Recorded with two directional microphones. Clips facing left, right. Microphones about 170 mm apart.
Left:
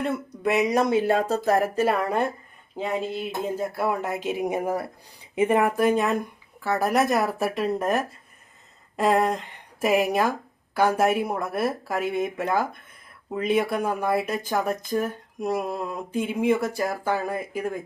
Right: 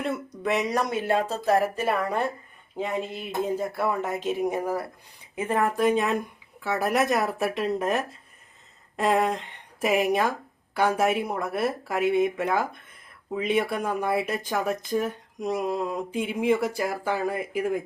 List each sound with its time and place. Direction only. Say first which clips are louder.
0.0 s speech: left 3 dB; 5° left (ahead or behind)
0.7 s speech: left 4 dB; 25° left (ahead or behind); by 1.9 s 45° left (ahead or behind)
2.7 s speech: left 2 dB; centre (ahead or behind)